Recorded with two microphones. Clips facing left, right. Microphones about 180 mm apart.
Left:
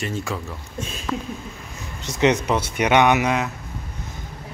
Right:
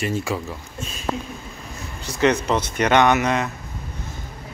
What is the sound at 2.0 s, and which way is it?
Speech, 20° left (ahead or behind).